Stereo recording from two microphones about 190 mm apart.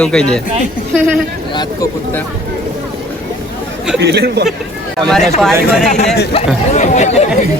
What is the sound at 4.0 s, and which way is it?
Speech, 65° right (ahead or behind).